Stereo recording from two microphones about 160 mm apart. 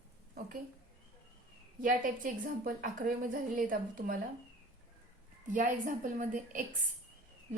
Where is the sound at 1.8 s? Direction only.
60° right (ahead or behind).